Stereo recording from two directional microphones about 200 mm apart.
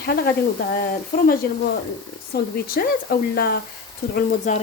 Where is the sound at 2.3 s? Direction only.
50° left (ahead or behind).